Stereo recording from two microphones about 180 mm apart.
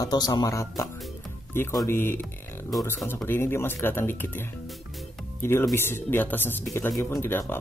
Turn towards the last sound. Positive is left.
turn(degrees=15)  # may be behind; listen again after turning